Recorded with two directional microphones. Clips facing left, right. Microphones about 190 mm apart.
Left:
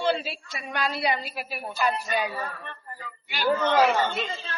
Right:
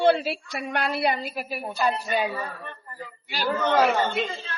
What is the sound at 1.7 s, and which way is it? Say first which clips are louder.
Speech: right 2 dB; 25° right (ahead or behind).